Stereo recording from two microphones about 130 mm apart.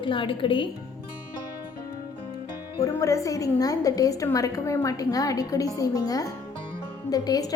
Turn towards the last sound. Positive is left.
turn(degrees=30)  # may be behind; listen again after turning